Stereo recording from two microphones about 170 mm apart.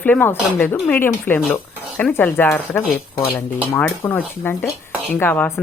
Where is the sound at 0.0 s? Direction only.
10° left (ahead or behind).